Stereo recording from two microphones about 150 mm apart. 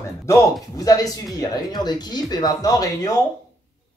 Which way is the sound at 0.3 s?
25° left (ahead or behind).